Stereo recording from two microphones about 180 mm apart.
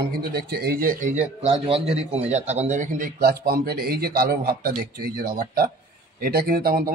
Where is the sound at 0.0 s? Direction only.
65° right (ahead or behind).